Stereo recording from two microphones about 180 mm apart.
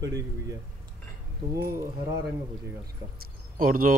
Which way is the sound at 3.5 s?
50° right (ahead or behind).